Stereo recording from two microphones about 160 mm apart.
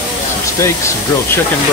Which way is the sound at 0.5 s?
15° left (ahead or behind).